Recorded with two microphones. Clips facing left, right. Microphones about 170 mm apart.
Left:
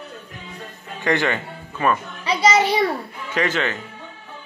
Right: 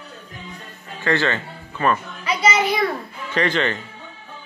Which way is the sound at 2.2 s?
35° left (ahead or behind).